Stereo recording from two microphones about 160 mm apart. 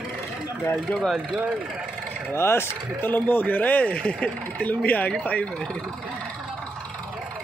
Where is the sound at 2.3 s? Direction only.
15° left (ahead or behind).